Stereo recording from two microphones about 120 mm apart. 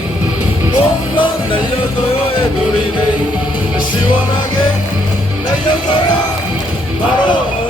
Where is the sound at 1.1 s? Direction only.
45° left (ahead or behind).